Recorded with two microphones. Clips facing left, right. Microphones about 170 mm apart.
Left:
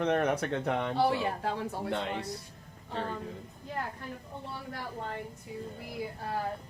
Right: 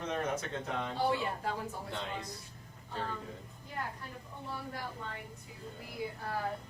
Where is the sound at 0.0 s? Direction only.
65° left (ahead or behind).